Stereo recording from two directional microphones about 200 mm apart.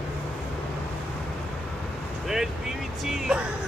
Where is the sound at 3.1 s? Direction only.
5° right (ahead or behind).